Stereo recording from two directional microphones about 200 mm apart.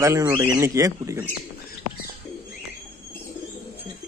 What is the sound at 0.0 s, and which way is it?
Speech, 15° right (ahead or behind).